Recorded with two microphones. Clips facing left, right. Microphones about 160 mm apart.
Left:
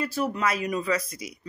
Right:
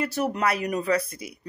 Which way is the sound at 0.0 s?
70° right (ahead or behind).